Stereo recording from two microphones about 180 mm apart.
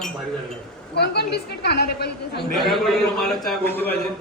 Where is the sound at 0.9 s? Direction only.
65° left (ahead or behind).